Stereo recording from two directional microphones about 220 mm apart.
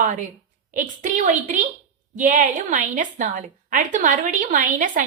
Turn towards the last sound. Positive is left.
turn(degrees=-35)  # may be behind; listen again after turning